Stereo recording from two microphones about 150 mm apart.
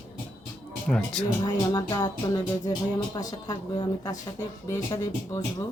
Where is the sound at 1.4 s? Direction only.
25° left (ahead or behind).